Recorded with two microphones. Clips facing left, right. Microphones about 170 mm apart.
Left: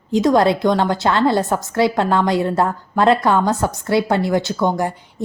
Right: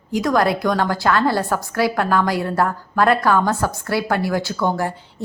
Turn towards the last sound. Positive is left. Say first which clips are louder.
# left 2 dB
turn(degrees=15)  # may be behind; listen again after turning